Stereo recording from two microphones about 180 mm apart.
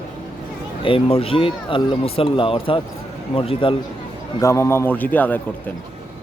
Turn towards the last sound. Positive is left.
turn(degrees=10)  # may be behind; listen again after turning